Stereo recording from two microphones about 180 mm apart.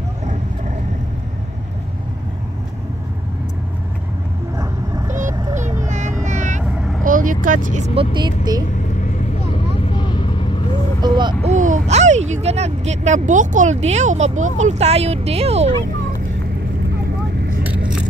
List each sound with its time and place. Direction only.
4.6 s vehicle: 20° right (ahead or behind)
5.1 s a sound: 45° right (ahead or behind)
6.2 s vehicle: 45° right (ahead or behind)
7.1 s speech: 45° right (ahead or behind); by 8.6 s 25° right (ahead or behind)
9.9 s vehicle: 25° left (ahead or behind)
11.0 s a sound: 25° right (ahead or behind)
11.4 s speech: 45° right (ahead or behind)